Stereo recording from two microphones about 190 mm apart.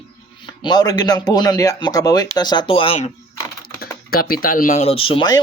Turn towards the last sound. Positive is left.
turn(degrees=25)  # may be behind; listen again after turning